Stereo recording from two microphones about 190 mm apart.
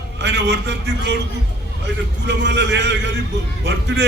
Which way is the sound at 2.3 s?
65° right (ahead or behind).